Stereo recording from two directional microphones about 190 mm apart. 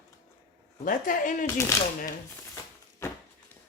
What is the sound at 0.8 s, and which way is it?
Speech, 45° left (ahead or behind).